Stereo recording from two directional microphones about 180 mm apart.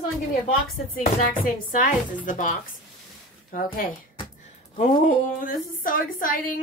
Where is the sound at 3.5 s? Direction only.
50° left (ahead or behind).